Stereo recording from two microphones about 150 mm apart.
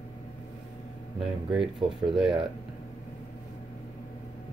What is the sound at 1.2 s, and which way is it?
Speech, centre (ahead or behind).